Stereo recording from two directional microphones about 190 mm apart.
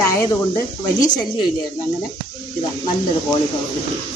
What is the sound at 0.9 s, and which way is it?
Speech, 45° left (ahead or behind).